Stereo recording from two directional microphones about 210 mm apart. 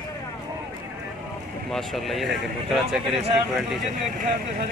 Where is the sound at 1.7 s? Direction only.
Centre (ahead or behind).